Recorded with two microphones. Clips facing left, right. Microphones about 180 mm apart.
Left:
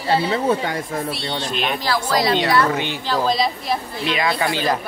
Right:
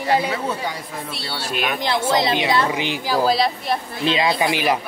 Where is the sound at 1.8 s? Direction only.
25° right (ahead or behind); by 3.7 s 5° right (ahead or behind).